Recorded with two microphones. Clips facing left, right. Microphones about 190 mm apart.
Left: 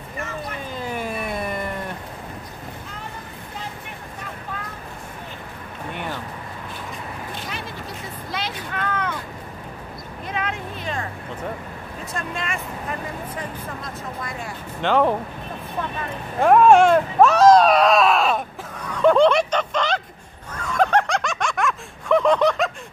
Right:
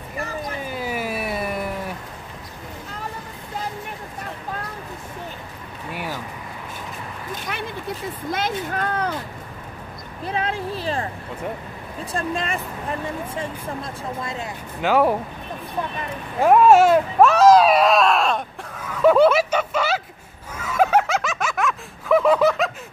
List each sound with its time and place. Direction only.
0.7 s cat: 5° right (ahead or behind)
5.9 s a sound: 5° right (ahead or behind)
8.3 s vehicle: 50° right (ahead or behind)
8.6 s vehicle: 40° right (ahead or behind)
10.2 s a sound: 30° right (ahead or behind)
12.0 s speech: 30° right (ahead or behind)
14.2 s speech: 25° right (ahead or behind)
14.8 s speech: 10° right (ahead or behind)
16.3 s a sound: 5° right (ahead or behind)
20.5 s snicker: 5° right (ahead or behind)